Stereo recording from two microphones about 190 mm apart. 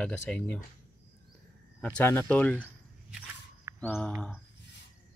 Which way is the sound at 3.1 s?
10° right (ahead or behind).